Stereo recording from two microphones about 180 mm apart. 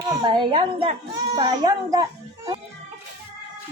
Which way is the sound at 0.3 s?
25° right (ahead or behind).